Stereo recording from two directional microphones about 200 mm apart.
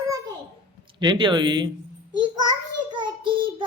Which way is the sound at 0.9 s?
25° right (ahead or behind).